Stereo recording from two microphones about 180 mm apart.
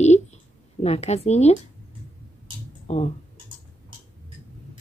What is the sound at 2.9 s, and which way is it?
Speech, 35° left (ahead or behind).